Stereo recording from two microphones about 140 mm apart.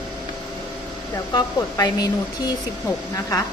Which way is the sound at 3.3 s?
25° left (ahead or behind).